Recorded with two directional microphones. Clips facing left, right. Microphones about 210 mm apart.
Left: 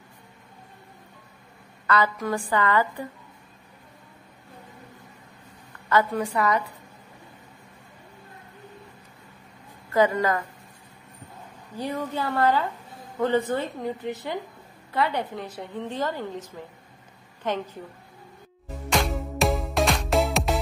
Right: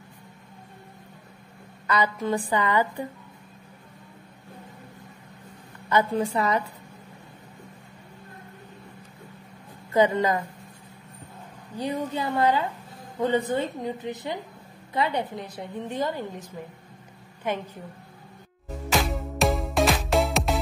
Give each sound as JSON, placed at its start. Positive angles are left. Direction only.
{"t": 1.9, "sound": "a woman's voice", "side_deg": -20}
{"t": 5.9, "sound": "a woman's voice", "side_deg": -20}
{"t": 9.9, "sound": "a woman's voice", "side_deg": -20}
{"t": 11.8, "sound": "a woman's voice", "side_deg": -15}
{"t": 18.9, "sound": "music", "side_deg": 0}